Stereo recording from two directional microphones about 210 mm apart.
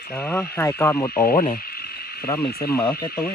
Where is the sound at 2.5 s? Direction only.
45° left (ahead or behind).